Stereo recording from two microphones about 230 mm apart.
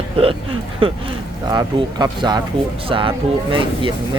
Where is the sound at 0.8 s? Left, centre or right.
Right.